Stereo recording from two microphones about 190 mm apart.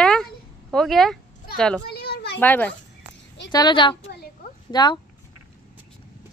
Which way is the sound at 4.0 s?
60° left (ahead or behind).